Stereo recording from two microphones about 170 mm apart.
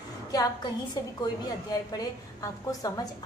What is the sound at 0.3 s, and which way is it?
A woman's voice, 25° left (ahead or behind).